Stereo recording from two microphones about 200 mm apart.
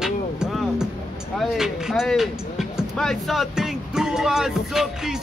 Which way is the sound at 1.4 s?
Centre (ahead or behind).